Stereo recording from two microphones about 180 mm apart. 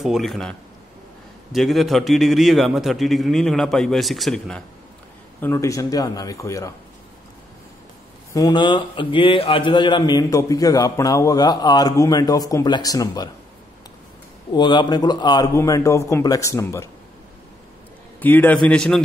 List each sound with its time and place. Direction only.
0.0 s a man's voice: centre (ahead or behind)
5.4 s a man's voice: 15° left (ahead or behind)
8.3 s speech: 20° left (ahead or behind)
14.5 s a man's voice: 25° left (ahead or behind)
18.2 s a man's voice: 10° left (ahead or behind)